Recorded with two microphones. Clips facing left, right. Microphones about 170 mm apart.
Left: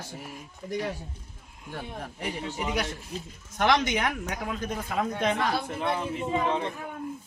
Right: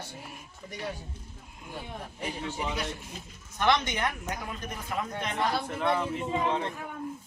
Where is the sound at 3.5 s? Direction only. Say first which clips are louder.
Left 2 dB; 90° left.